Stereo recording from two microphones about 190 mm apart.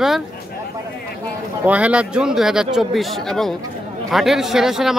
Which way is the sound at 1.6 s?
5° right (ahead or behind).